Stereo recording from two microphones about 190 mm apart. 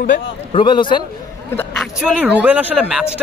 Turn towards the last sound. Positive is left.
turn(degrees=-5)  # may be behind; listen again after turning